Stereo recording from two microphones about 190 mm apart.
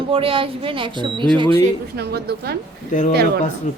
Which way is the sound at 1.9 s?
55° right (ahead or behind).